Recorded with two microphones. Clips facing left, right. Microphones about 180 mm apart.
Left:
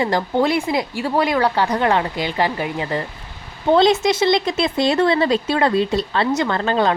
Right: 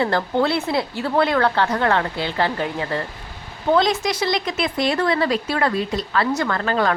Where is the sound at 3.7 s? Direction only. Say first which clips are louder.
Left 6 dB; 25° left (ahead or behind).